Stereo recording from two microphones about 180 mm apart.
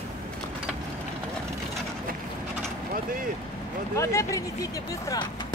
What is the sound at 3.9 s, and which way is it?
Speech, 15° left (ahead or behind).